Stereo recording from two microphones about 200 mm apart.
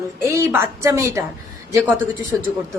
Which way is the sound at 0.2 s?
15° right (ahead or behind).